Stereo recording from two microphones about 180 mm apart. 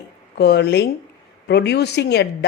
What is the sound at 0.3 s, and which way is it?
Speech, 65° left (ahead or behind).